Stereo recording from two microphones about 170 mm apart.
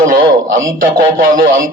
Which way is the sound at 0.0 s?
55° right (ahead or behind).